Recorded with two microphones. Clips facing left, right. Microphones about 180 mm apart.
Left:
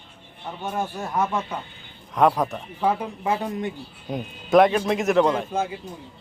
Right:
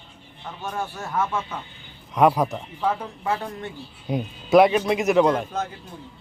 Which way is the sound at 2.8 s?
15° left (ahead or behind).